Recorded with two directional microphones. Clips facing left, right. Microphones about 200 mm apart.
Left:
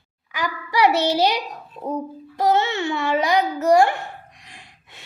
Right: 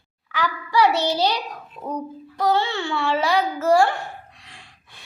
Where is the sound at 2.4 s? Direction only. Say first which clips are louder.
Left 2 dB; 20° left (ahead or behind).